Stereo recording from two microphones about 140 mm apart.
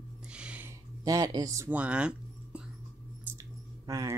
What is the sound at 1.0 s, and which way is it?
Speech, 25° right (ahead or behind).